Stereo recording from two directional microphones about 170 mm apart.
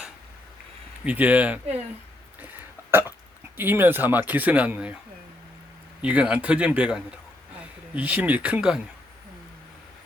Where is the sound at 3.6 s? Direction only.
10° right (ahead or behind).